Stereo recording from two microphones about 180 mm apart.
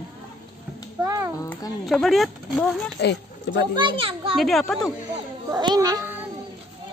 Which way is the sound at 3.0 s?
70° left (ahead or behind).